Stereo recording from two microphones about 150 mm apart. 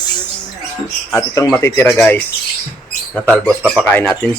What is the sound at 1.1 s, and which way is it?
Speech, 20° left (ahead or behind).